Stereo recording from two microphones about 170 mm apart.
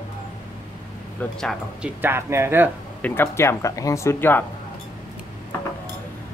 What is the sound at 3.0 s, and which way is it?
Speech, 15° left (ahead or behind).